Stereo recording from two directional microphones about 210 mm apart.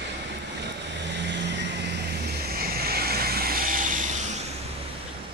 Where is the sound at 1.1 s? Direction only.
55° right (ahead or behind); by 4.2 s 40° right (ahead or behind).